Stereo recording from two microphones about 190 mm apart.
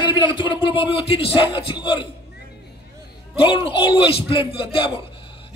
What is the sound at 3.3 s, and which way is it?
Music, 25° left (ahead or behind).